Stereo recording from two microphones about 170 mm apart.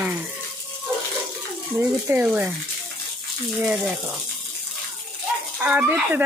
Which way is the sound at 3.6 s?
5° right (ahead or behind).